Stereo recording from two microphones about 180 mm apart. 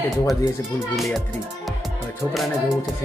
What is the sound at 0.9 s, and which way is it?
Music, centre (ahead or behind).